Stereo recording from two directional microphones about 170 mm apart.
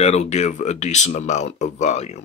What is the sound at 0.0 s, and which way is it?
Speech, 40° left (ahead or behind).